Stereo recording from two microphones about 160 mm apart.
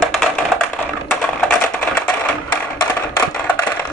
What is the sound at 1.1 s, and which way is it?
Music, 10° left (ahead or behind).